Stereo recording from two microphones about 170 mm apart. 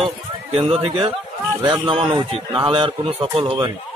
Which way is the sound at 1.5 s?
15° right (ahead or behind).